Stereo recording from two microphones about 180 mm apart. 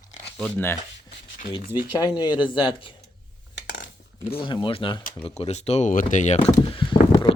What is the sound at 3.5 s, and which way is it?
Cutlery, 80° left.